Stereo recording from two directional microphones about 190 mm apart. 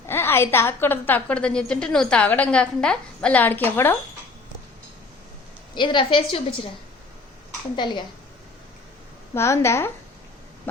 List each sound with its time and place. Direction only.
0.1 s a woman's voice: 10° left (ahead or behind)
5.7 s a woman's voice: 25° left (ahead or behind)
7.8 s a woman's voice: 25° left (ahead or behind)
9.3 s a woman's voice: 15° left (ahead or behind)